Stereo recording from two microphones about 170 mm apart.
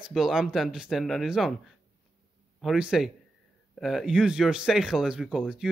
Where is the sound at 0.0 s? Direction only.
Centre (ahead or behind).